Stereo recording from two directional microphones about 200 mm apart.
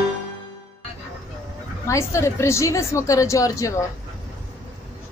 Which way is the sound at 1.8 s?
15° left (ahead or behind).